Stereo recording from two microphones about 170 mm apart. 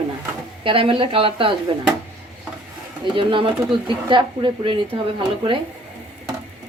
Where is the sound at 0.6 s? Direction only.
30° right (ahead or behind).